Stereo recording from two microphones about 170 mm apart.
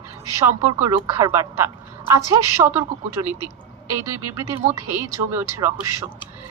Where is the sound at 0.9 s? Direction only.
25° right (ahead or behind).